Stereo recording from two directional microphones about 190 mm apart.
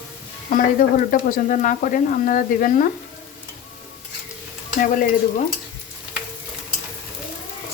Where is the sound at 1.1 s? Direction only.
45° left (ahead or behind).